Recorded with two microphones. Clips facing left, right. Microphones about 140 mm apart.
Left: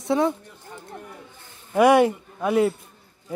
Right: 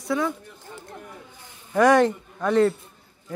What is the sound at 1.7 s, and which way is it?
Speech, 10° left (ahead or behind).